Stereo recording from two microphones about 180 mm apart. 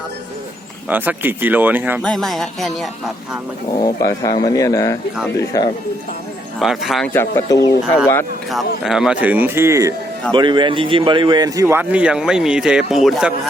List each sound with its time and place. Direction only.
0.9 s a man's voice: 10° right (ahead or behind)
2.0 s speech: 5° left (ahead or behind)
3.8 s speech: 20° left (ahead or behind)
6.6 s speech: centre (ahead or behind)
7.1 s speech: 15° left (ahead or behind)
8.4 s a man's voice: centre (ahead or behind)
10.3 s a man's voice: 25° right (ahead or behind); by 13.5 s centre (ahead or behind)